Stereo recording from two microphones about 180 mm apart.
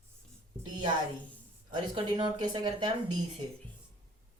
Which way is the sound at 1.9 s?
25° right (ahead or behind).